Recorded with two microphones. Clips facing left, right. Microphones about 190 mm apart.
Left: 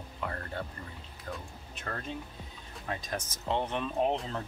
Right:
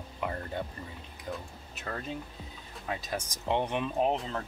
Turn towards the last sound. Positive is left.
turn(degrees=0)  # may be behind; listen again after turning